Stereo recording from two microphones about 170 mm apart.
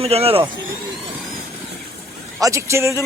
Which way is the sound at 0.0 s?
35° right (ahead or behind).